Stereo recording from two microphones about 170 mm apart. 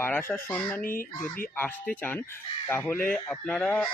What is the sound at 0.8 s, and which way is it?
Speech, 55° left (ahead or behind).